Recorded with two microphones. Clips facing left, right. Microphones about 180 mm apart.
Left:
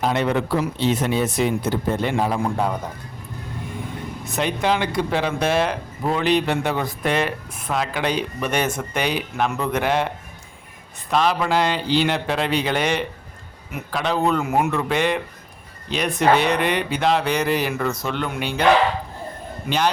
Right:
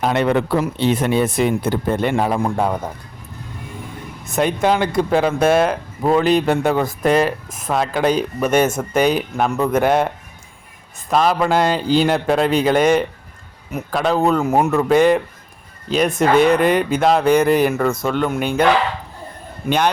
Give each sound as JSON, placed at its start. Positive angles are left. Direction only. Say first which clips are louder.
{"t": 0.0, "sound": "speech", "louder": "right 4 dB", "side_deg": -60}
{"t": 4.3, "sound": "speech", "louder": "right 5 dB", "side_deg": -50}
{"t": 11.1, "sound": "speech", "louder": "right 4 dB", "side_deg": -45}